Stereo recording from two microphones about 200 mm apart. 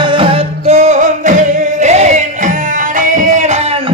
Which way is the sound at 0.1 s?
25° right (ahead or behind).